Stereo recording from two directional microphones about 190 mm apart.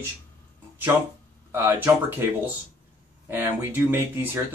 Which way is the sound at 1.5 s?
10° right (ahead or behind).